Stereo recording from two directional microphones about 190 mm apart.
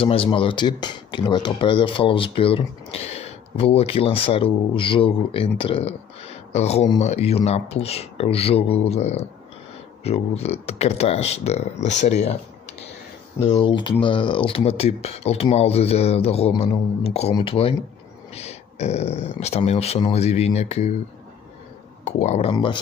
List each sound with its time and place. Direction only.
0.0 s speech: 30° left (ahead or behind)
22.0 s speech: 35° left (ahead or behind)